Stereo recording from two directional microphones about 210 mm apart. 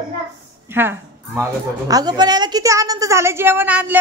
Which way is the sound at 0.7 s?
10° right (ahead or behind).